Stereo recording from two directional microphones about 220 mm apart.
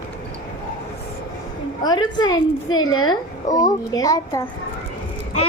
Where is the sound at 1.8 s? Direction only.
20° left (ahead or behind).